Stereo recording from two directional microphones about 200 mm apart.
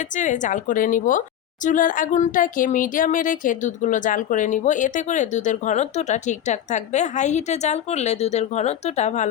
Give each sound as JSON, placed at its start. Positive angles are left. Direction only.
{"t": 0.2, "sound": "speech", "side_deg": 40}